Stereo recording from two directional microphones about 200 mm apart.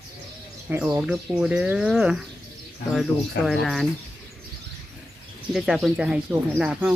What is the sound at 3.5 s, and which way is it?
Speech, centre (ahead or behind).